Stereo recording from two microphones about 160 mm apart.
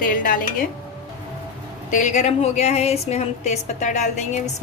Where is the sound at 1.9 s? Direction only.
50° left (ahead or behind).